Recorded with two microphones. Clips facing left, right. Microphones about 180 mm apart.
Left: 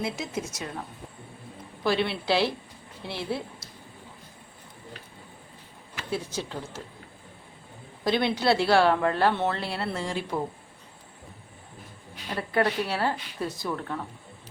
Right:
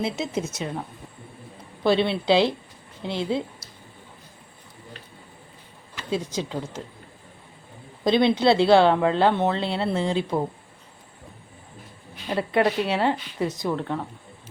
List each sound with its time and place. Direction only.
0.0 s speech: 25° right (ahead or behind)
1.8 s speech: 25° right (ahead or behind)
6.1 s speech: 15° right (ahead or behind)
8.0 s speech: 20° right (ahead or behind)
12.4 s speech: 20° right (ahead or behind)